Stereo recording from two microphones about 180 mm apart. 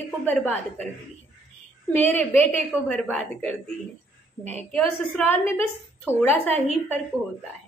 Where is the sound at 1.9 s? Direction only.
10° left (ahead or behind).